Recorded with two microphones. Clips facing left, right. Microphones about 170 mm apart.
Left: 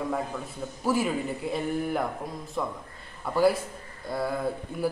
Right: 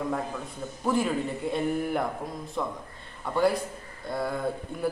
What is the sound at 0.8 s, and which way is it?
A man's voice, 5° left (ahead or behind).